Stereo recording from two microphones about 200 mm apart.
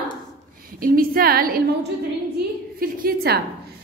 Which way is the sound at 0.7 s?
45° right (ahead or behind).